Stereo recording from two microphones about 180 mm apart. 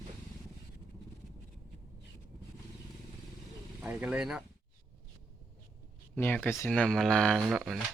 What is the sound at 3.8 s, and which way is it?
Speech, 10° right (ahead or behind).